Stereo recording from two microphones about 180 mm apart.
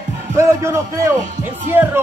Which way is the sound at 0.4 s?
15° right (ahead or behind).